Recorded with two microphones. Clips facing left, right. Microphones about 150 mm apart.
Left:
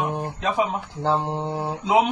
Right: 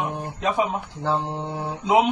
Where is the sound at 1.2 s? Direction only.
25° left (ahead or behind).